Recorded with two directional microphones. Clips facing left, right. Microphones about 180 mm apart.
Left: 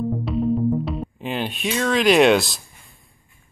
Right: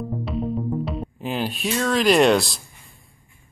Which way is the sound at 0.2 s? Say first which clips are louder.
Left 4 dB; centre (ahead or behind).